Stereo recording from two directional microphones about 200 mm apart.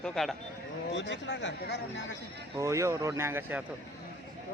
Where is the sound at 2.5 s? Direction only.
15° right (ahead or behind).